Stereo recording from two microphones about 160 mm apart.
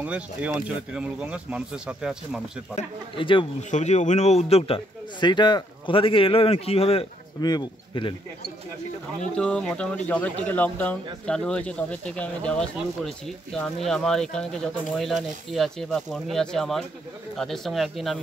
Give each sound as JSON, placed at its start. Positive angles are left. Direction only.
{"t": 0.0, "sound": "speech", "side_deg": -10}
{"t": 2.7, "sound": "a man's voice", "side_deg": 30}
{"t": 3.7, "sound": "a man's voice", "side_deg": 45}
{"t": 7.4, "sound": "speech", "side_deg": 25}
{"t": 9.3, "sound": "speech", "side_deg": 5}